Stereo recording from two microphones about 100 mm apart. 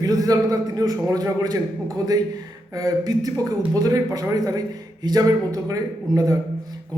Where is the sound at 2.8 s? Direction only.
40° right (ahead or behind).